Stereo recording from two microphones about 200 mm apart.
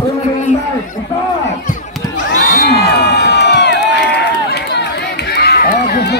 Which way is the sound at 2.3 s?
50° left (ahead or behind).